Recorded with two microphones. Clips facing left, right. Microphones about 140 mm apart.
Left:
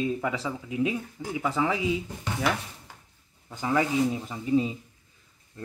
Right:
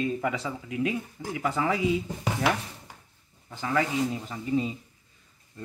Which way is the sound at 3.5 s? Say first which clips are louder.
Left 2 dB; 15° left (ahead or behind).